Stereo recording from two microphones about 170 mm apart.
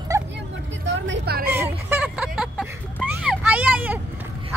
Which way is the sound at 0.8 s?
90° right.